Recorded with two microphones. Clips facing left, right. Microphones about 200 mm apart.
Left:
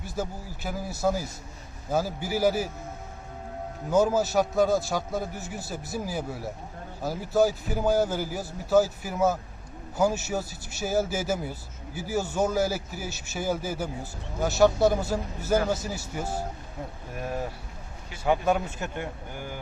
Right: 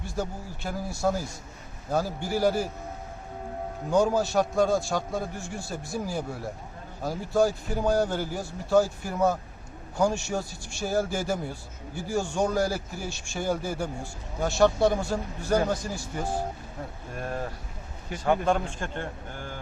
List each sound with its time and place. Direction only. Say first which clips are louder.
0.0 s a man's voice: even; 5° left (ahead or behind)
3.8 s a man's voice: left 1 dB; 5° left (ahead or behind)